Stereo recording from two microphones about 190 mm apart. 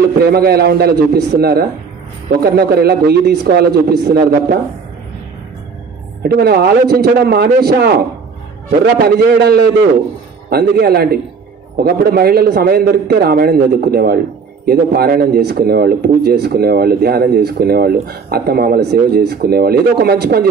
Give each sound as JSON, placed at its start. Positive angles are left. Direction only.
{"t": 0.2, "sound": "a man's voice", "side_deg": -55}
{"t": 6.2, "sound": "a man's voice", "side_deg": -55}
{"t": 9.0, "sound": "a man's voice", "side_deg": -60}